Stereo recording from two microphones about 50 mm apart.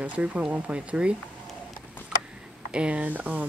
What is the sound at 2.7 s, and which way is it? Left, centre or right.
Speech, right.